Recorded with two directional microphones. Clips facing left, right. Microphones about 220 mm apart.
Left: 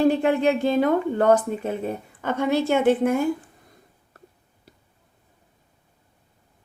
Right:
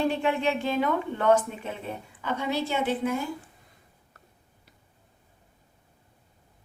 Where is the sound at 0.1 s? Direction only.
40° left (ahead or behind).